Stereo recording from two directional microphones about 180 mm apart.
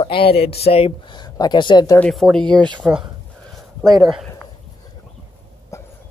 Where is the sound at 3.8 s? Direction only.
20° right (ahead or behind).